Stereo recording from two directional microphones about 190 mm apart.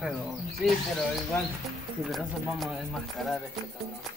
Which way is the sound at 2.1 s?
Centre (ahead or behind).